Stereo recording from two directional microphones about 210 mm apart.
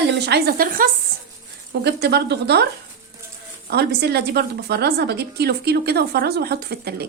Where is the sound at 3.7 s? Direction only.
50° right (ahead or behind).